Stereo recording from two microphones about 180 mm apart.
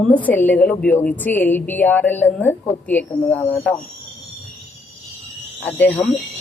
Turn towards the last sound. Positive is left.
turn(degrees=10)  # may be behind; listen again after turning